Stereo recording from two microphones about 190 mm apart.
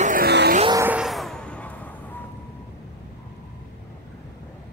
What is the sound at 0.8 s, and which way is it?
Music, 5° right (ahead or behind).